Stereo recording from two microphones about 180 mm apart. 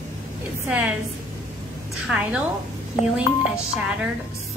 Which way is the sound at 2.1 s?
5° right (ahead or behind).